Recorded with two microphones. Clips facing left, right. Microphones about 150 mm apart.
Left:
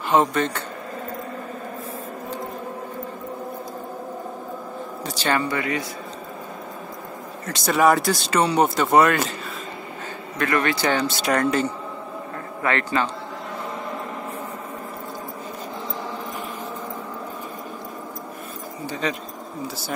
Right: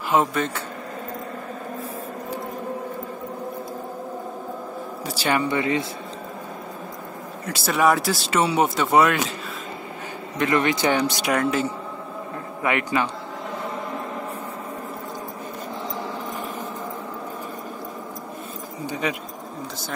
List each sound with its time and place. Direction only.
0.1 s speech: 5° right (ahead or behind)
5.0 s speech: 10° right (ahead or behind)
7.4 s speech: 5° right (ahead or behind)
10.4 s speech: 20° right (ahead or behind)
12.6 s speech: 15° right (ahead or behind)
18.9 s a sound: 10° right (ahead or behind)